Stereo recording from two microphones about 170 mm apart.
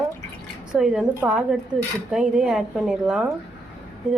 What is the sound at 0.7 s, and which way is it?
Speech, 5° right (ahead or behind).